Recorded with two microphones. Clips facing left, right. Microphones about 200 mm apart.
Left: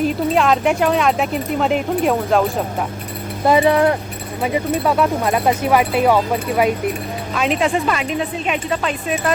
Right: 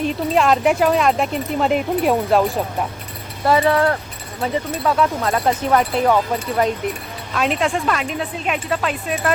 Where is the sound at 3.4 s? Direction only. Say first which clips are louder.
Left 2 dB; 20° left (ahead or behind).